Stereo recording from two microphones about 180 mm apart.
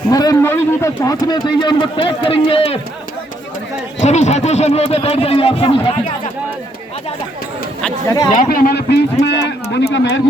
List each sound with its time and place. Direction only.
0.1 s speech: 20° left (ahead or behind)
4.0 s speech: 40° left (ahead or behind)
8.0 s speech: 20° left (ahead or behind)
8.5 s a man's voice: 55° left (ahead or behind); by 10.1 s 80° left